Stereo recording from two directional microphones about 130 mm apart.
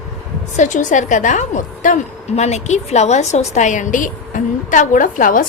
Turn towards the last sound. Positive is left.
turn(degrees=90)